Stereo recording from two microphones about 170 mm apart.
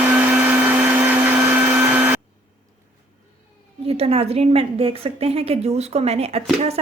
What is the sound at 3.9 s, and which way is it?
A woman's voice, 35° right (ahead or behind).